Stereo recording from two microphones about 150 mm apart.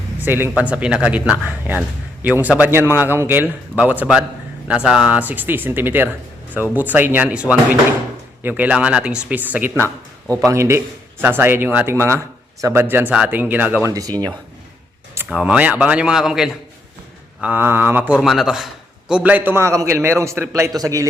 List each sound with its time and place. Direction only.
0.2 s speech: 15° right (ahead or behind)
13.9 s speech: 25° right (ahead or behind)
15.1 s speech: 10° right (ahead or behind)